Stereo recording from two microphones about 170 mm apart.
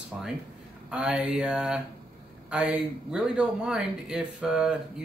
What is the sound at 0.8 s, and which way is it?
Speech, 5° right (ahead or behind).